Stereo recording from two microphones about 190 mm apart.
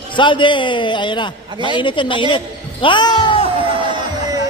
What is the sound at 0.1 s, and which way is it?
A man's voice, 25° left (ahead or behind).